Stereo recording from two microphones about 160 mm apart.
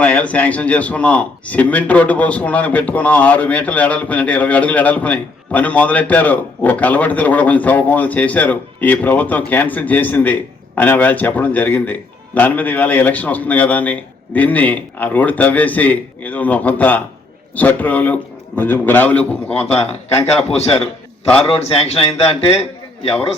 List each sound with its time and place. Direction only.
0.0 s a man's voice: 10° left (ahead or behind)
20.2 s a man's voice: 40° left (ahead or behind)